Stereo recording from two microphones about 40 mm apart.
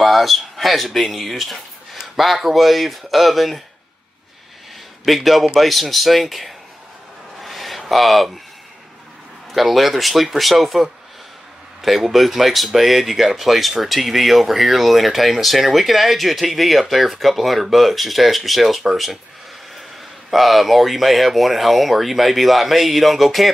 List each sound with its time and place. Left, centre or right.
0.0 s speech: centre
5.0 s speech: centre
7.3 s a sound: centre
9.5 s speech: centre
11.8 s speech: centre
20.2 s speech: centre